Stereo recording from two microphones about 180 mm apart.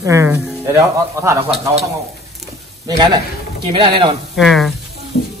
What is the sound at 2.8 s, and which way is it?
Speech, 25° right (ahead or behind).